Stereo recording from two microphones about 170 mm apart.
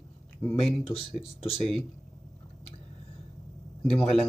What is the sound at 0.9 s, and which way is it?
Speech, 35° left (ahead or behind).